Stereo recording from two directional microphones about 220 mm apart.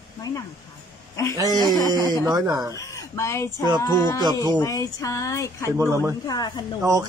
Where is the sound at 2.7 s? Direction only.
15° left (ahead or behind).